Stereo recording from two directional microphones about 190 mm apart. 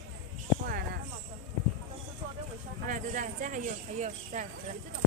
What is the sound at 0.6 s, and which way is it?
Speech, 50° right (ahead or behind).